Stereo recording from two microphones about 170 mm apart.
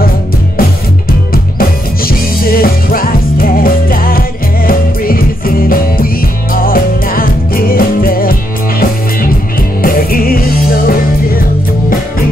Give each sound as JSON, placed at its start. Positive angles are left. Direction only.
{"t": 0.6, "sound": "music", "side_deg": 60}